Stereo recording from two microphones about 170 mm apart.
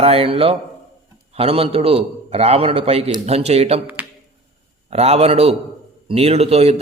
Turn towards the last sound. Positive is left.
turn(degrees=-35)  # may be behind; listen again after turning